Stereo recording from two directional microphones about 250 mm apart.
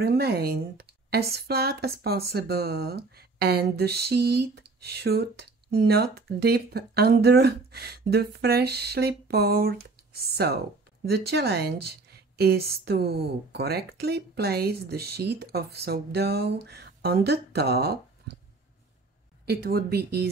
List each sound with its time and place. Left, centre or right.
0.0 s speech: right
19.4 s speech: right